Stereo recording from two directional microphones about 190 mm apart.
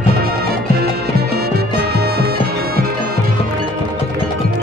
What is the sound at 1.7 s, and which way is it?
Music, 60° right (ahead or behind).